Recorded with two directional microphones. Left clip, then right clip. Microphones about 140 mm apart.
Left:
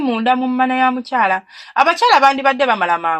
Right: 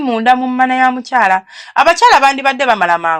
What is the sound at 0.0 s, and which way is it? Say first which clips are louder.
Speech: right 5 dB; 45° right (ahead or behind).